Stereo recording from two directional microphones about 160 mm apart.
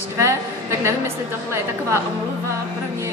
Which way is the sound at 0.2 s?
15° right (ahead or behind).